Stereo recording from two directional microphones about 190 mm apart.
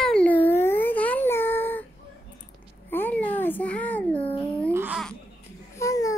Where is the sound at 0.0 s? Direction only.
5° left (ahead or behind).